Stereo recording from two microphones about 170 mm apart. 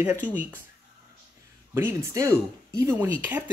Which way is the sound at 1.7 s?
15° right (ahead or behind).